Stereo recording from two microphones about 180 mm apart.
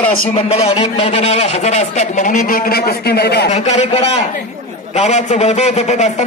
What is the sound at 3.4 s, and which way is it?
A man's voice, 40° left (ahead or behind).